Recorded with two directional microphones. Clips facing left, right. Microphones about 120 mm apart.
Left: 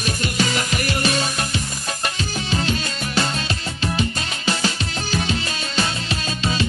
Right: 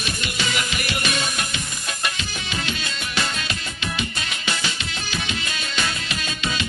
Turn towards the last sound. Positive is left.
turn(degrees=35)  # may be behind; listen again after turning